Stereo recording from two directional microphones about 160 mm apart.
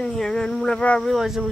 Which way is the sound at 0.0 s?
5° left (ahead or behind).